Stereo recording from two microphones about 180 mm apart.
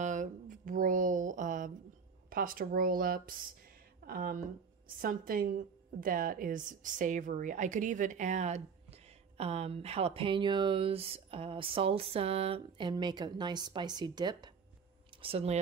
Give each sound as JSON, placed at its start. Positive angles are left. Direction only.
{"t": 0.0, "sound": "a sound", "side_deg": -45}
{"t": 2.2, "sound": "a woman's voice", "side_deg": -50}
{"t": 15.2, "sound": "speech", "side_deg": -35}